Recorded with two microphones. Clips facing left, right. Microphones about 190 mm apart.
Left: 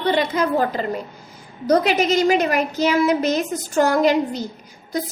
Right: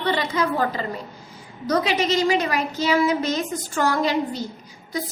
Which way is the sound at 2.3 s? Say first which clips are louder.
Left 4 dB; 45° left (ahead or behind).